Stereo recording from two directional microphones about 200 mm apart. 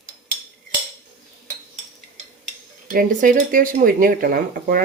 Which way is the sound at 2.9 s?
45° right (ahead or behind).